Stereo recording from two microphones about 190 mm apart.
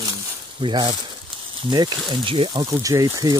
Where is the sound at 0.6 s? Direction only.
25° right (ahead or behind).